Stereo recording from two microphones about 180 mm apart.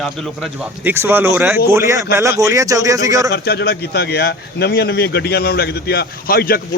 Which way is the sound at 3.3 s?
65° left (ahead or behind).